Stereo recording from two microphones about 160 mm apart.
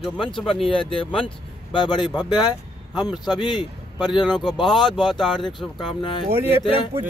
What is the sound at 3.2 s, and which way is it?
A man's voice, 25° left (ahead or behind).